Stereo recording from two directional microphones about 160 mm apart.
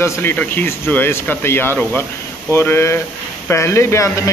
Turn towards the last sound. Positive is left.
turn(degrees=20)  # may be behind; listen again after turning